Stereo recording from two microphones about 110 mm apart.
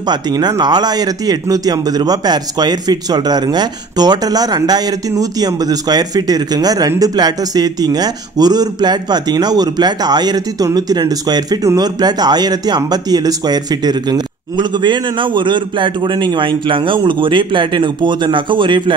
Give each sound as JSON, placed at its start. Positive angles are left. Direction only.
{"t": 0.1, "sound": "a man's voice", "side_deg": -40}